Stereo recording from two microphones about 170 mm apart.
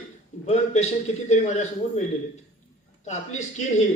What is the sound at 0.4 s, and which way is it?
A man's voice, 40° left (ahead or behind).